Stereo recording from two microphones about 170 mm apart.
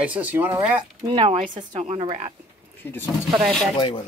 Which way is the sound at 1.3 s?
50° right (ahead or behind).